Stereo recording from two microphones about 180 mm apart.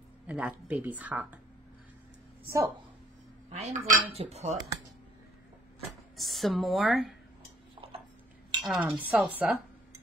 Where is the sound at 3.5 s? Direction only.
40° right (ahead or behind).